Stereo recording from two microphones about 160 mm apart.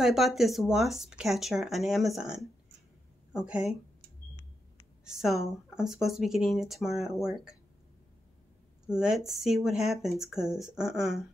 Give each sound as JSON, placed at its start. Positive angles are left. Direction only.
{"t": 0.0, "sound": "speech", "side_deg": 0}
{"t": 5.0, "sound": "speech", "side_deg": 0}
{"t": 8.8, "sound": "speech", "side_deg": -5}